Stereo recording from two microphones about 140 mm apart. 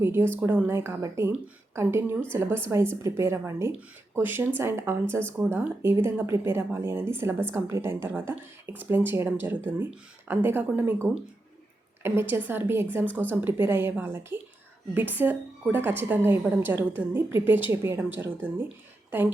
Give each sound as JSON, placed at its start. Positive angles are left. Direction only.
{"t": 0.0, "sound": "a woman's voice", "side_deg": -15}